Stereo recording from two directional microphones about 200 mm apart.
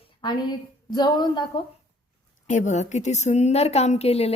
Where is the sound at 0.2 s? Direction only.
20° left (ahead or behind).